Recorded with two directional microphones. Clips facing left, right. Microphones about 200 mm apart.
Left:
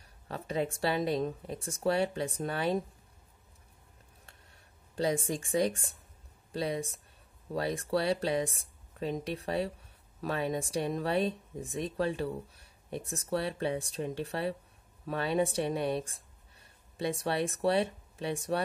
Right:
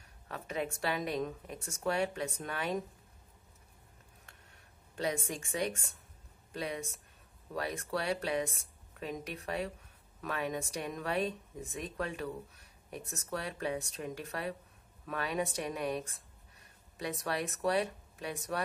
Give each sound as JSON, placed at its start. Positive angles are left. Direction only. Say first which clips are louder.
{"t": 0.3, "sound": "speech", "louder": "left 4 dB", "side_deg": 30}
{"t": 4.9, "sound": "speech", "louder": "left 5 dB", "side_deg": 30}